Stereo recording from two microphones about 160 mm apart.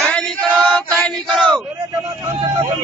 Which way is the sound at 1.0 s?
5° left (ahead or behind).